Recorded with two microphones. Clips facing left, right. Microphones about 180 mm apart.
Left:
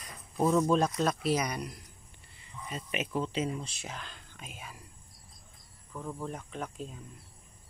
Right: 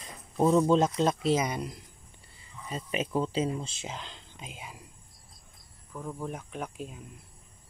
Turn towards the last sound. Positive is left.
turn(degrees=-5)  # may be behind; listen again after turning